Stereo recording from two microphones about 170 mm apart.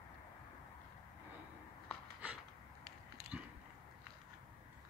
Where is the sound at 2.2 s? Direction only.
10° right (ahead or behind).